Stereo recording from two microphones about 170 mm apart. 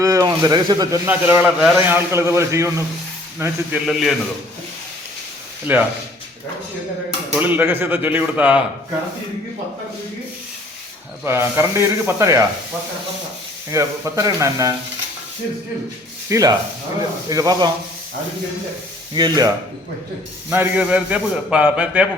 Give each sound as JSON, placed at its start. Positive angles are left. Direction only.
{"t": 0.0, "sound": "speech", "side_deg": -20}
{"t": 1.0, "sound": "a man's voice", "side_deg": -10}
{"t": 1.9, "sound": "a man's voice", "side_deg": -15}
{"t": 5.7, "sound": "a man's voice", "side_deg": -10}
{"t": 7.3, "sound": "a man's voice", "side_deg": -10}
{"t": 11.2, "sound": "a man's voice", "side_deg": -15}
{"t": 13.7, "sound": "a man's voice", "side_deg": -15}
{"t": 16.3, "sound": "speech", "side_deg": -20}
{"t": 19.1, "sound": "speech", "side_deg": -25}
{"t": 20.5, "sound": "a man's voice", "side_deg": -10}